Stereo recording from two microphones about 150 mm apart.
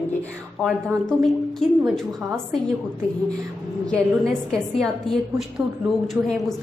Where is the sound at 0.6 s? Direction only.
5° left (ahead or behind).